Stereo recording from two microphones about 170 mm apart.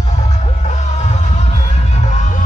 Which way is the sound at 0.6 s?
45° left (ahead or behind).